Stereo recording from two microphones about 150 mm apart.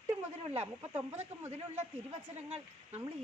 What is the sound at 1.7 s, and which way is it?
Speech, 45° right (ahead or behind).